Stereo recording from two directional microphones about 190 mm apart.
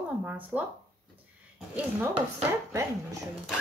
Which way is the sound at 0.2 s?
5° right (ahead or behind).